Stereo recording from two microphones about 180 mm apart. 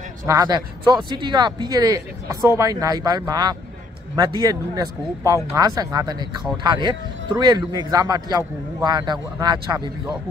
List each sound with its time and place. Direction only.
0.3 s speech: 20° right (ahead or behind)